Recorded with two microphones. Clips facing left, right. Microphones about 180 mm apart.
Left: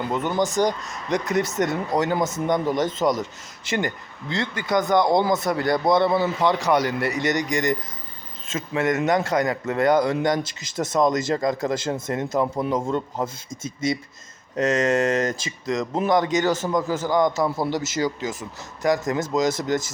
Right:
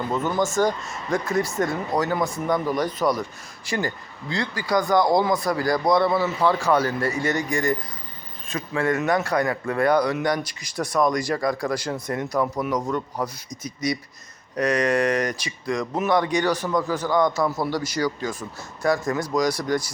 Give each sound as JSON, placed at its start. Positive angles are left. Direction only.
{"t": 0.1, "sound": "a man's voice", "side_deg": 20}